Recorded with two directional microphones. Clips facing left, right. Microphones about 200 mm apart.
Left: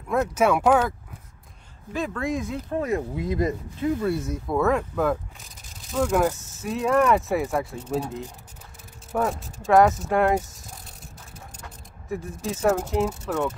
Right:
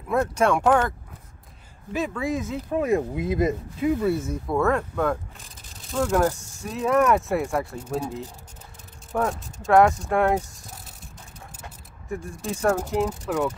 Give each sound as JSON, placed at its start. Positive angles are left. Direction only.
{"t": 0.1, "sound": "speech", "side_deg": 5}
{"t": 2.0, "sound": "speech", "side_deg": -5}
{"t": 2.7, "sound": "speech", "side_deg": -20}
{"t": 3.8, "sound": "speech", "side_deg": -5}
{"t": 9.1, "sound": "speech", "side_deg": 0}
{"t": 12.1, "sound": "speech", "side_deg": 0}